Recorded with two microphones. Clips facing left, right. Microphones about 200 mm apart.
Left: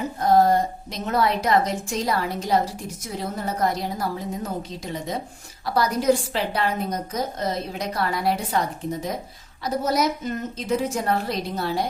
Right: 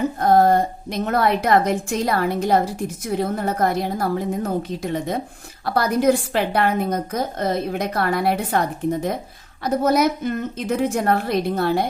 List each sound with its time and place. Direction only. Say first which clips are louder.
0.2 s a woman's voice: right 2 dB; 55° right (ahead or behind)